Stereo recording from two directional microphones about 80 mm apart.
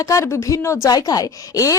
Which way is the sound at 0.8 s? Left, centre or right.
Left.